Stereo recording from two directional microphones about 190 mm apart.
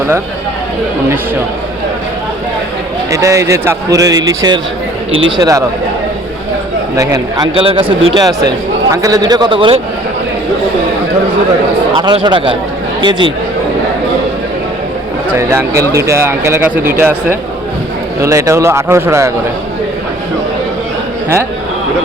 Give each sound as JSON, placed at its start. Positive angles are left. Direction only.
{"t": 3.1, "sound": "speech", "side_deg": -15}
{"t": 7.1, "sound": "a man's voice", "side_deg": -20}
{"t": 11.9, "sound": "a man's voice", "side_deg": -25}
{"t": 15.4, "sound": "speech", "side_deg": -15}